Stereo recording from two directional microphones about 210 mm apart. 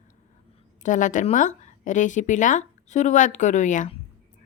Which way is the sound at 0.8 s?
35° left (ahead or behind).